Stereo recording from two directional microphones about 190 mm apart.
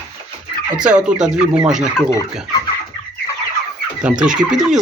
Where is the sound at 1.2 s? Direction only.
5° right (ahead or behind).